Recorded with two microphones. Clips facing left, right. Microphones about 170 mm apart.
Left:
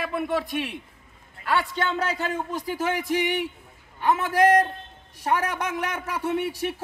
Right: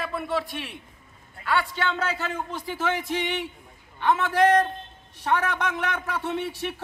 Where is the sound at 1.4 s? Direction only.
40° left (ahead or behind).